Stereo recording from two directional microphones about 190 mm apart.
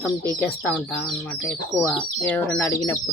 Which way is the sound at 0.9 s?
10° left (ahead or behind).